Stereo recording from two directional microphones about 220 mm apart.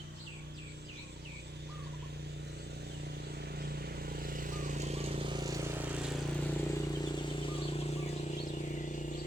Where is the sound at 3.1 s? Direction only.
45° right (ahead or behind); by 6.2 s 5° right (ahead or behind).